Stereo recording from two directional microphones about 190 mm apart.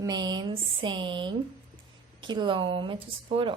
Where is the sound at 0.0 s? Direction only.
20° right (ahead or behind).